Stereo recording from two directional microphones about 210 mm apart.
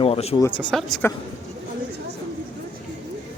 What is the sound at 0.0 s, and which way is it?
Speech, 30° left (ahead or behind).